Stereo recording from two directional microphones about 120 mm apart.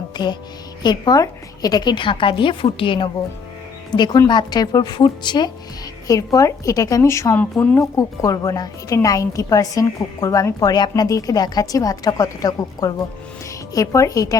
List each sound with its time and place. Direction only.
0.1 s music: 35° left (ahead or behind)
0.8 s a woman's voice: 35° left (ahead or behind)
6.1 s a woman's voice: 30° left (ahead or behind)
7.3 s speech: 15° left (ahead or behind)
7.8 s a woman's voice: 30° left (ahead or behind)